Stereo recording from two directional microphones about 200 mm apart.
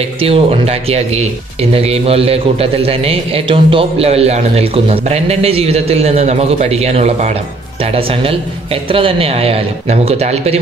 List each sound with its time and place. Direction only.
0.2 s speech: 30° right (ahead or behind)